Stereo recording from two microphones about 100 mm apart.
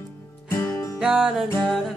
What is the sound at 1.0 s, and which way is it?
Music, 5° right (ahead or behind).